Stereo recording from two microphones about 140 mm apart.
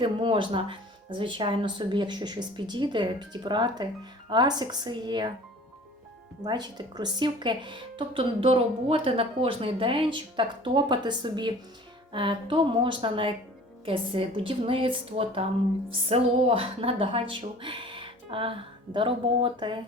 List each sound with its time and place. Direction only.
0.0 s a woman's voice: 35° right (ahead or behind)
6.4 s a woman's voice: 30° right (ahead or behind)